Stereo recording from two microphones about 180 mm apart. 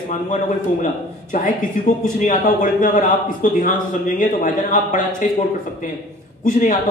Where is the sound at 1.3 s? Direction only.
50° left (ahead or behind).